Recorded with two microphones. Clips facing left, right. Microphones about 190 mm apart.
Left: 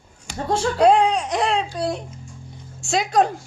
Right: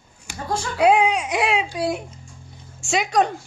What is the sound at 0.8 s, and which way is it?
Baby cry, 5° right (ahead or behind).